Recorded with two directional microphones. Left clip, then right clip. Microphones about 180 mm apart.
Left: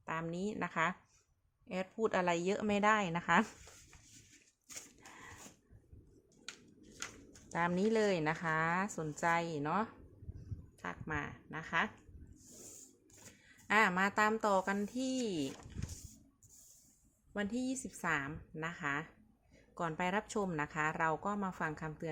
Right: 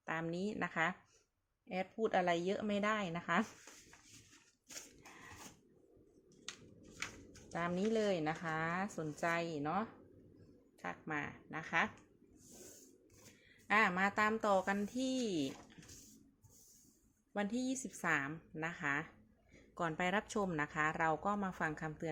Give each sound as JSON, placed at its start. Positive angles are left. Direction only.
{"t": 0.0, "sound": "a woman's voice", "side_deg": 5}
{"t": 7.5, "sound": "a woman's voice", "side_deg": 20}
{"t": 13.7, "sound": "a woman's voice", "side_deg": 15}
{"t": 17.3, "sound": "a woman's voice", "side_deg": 5}